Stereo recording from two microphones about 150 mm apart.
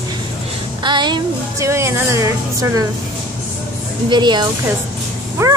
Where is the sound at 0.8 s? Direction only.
30° right (ahead or behind).